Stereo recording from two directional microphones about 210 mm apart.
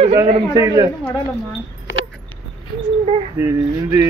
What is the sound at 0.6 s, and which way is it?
Speech, 15° right (ahead or behind).